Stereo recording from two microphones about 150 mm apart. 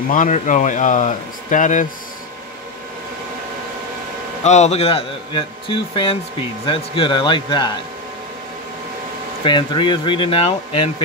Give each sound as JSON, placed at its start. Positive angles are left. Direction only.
{"t": 0.1, "sound": "speech", "side_deg": 60}
{"t": 4.4, "sound": "speech", "side_deg": 50}
{"t": 9.4, "sound": "speech", "side_deg": 30}